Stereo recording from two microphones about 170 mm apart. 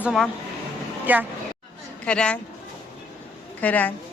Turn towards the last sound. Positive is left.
turn(degrees=10)  # may be behind; listen again after turning